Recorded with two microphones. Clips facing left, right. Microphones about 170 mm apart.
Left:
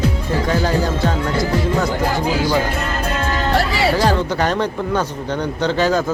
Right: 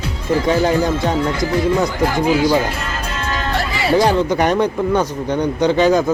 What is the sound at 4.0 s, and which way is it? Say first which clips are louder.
Speech: right 3 dB; 15° right (ahead or behind).